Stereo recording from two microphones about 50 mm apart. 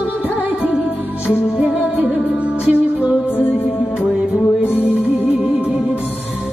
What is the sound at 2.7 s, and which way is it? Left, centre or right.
Music, right.